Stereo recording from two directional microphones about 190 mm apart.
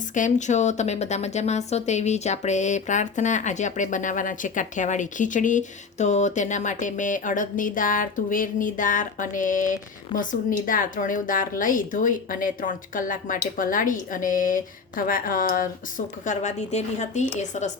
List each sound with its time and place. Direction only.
0.1 s speech: 40° left (ahead or behind)
10.1 s a woman's voice: 20° left (ahead or behind)
10.7 s speech: 45° left (ahead or behind)